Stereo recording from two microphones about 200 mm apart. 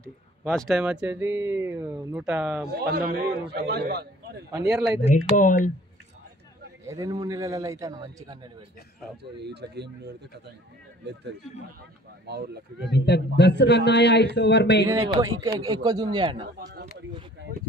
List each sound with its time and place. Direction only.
0.5 s speech: centre (ahead or behind)
2.7 s a man's voice: 50° right (ahead or behind)
4.6 s speech: 5° right (ahead or behind)
5.0 s speech: 40° left (ahead or behind)
6.9 s speech: 15° right (ahead or behind)
9.2 s a man's voice: 55° right (ahead or behind)
12.3 s a man's voice: 55° right (ahead or behind)
12.9 s speech: 55° left (ahead or behind)
14.9 s speech: 15° right (ahead or behind)
16.5 s a man's voice: 50° right (ahead or behind)